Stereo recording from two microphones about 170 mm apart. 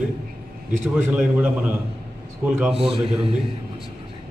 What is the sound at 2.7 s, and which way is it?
Speech, 30° right (ahead or behind).